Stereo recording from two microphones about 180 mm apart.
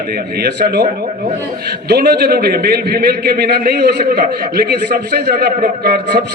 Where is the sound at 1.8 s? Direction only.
60° right (ahead or behind).